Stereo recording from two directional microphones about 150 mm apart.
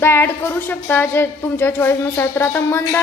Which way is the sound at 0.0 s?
15° left (ahead or behind).